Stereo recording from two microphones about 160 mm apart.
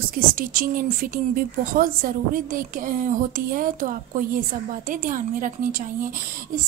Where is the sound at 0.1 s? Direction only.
65° right (ahead or behind).